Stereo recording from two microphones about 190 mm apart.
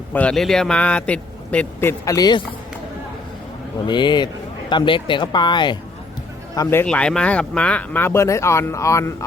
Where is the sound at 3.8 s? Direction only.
25° left (ahead or behind).